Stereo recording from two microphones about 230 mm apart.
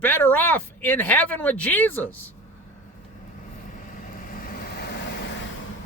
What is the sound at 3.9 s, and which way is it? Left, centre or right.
Vehicle, left.